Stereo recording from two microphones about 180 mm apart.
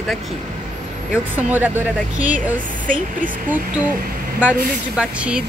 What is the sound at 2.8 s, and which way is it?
Speech, 50° right (ahead or behind).